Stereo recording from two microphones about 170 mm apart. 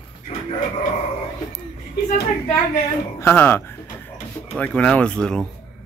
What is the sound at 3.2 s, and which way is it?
Speech, 10° left (ahead or behind).